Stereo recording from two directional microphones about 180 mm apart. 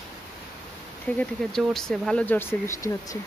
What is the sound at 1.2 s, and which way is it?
Speech, 5° left (ahead or behind).